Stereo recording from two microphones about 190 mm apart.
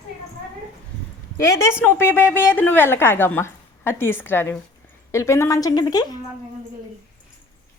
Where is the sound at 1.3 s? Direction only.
15° left (ahead or behind).